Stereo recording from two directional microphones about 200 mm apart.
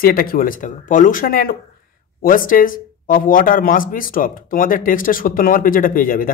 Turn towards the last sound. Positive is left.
turn(degrees=45)  # may be behind; listen again after turning